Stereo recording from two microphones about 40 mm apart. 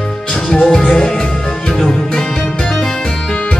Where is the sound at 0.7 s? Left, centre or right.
Centre.